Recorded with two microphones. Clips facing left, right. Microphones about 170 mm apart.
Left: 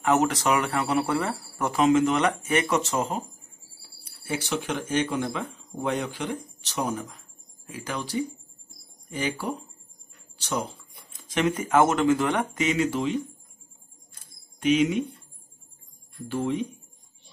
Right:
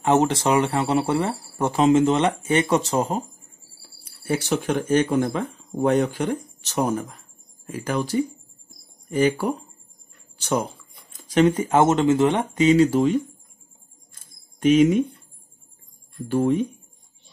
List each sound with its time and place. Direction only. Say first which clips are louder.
0.0 s speech: right 3 dB; 30° right (ahead or behind)
4.2 s speech: right 6 dB; 45° right (ahead or behind)
10.3 s a sound: right 6 dB; 50° right (ahead or behind)
11.1 s speech: right 7 dB; 35° right (ahead or behind)
14.6 s speech: right 6 dB; 45° right (ahead or behind)
16.3 s speech: right 7 dB; 45° right (ahead or behind)